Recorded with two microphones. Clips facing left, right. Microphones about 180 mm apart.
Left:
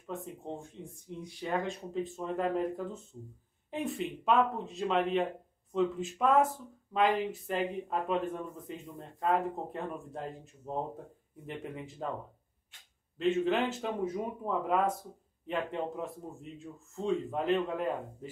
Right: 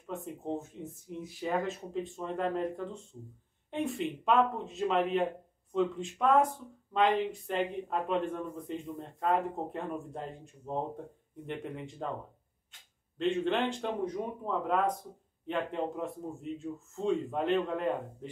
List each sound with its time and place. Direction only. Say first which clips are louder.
0.0 s speech: right 2 dB; centre (ahead or behind)
13.2 s speech: left 1 dB; 5° left (ahead or behind)